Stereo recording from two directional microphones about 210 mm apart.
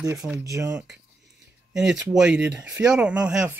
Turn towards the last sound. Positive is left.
turn(degrees=-5)  # may be behind; listen again after turning